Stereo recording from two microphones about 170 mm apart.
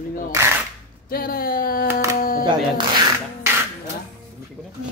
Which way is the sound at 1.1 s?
60° left (ahead or behind).